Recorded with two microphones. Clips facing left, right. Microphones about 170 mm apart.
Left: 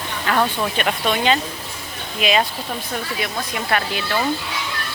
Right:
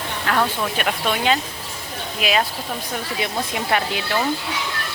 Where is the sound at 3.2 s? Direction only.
20° right (ahead or behind).